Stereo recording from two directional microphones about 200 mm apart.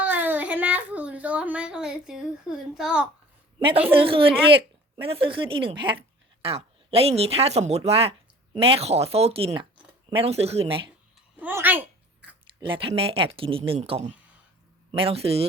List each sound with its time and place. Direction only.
0.0 s a child's voice: 10° right (ahead or behind)
3.6 s speech: 25° right (ahead or behind)
11.3 s a sound: 10° right (ahead or behind)
12.6 s speech: 25° right (ahead or behind)